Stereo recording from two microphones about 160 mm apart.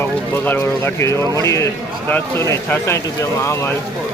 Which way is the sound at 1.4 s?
20° left (ahead or behind).